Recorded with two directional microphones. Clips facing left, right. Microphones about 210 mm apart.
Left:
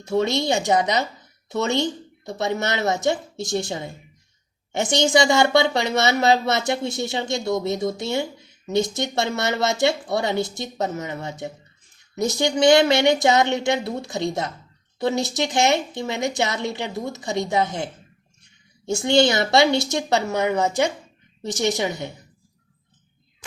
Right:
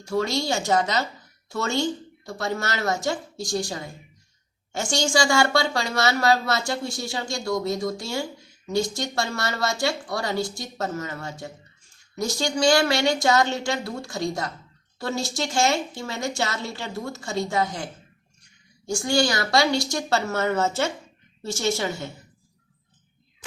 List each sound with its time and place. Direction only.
0.0 s speech: 20° left (ahead or behind)
18.9 s a woman's voice: 20° left (ahead or behind)